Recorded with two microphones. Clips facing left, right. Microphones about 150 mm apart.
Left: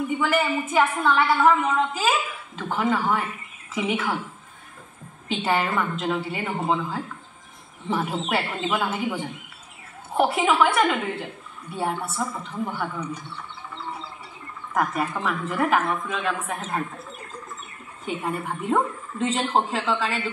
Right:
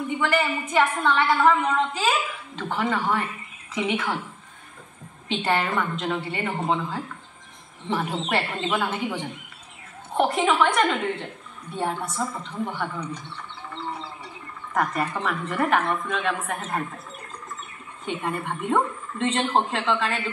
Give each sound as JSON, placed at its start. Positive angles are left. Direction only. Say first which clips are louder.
{"t": 0.2, "sound": "a woman's voice", "louder": "even", "side_deg": 5}
{"t": 5.3, "sound": "a woman's voice", "louder": "even", "side_deg": 5}
{"t": 14.7, "sound": "a woman's voice", "louder": "even", "side_deg": 5}
{"t": 18.0, "sound": "a woman's voice", "louder": "even", "side_deg": 5}